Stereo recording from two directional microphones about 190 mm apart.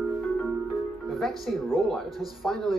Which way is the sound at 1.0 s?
Centre (ahead or behind).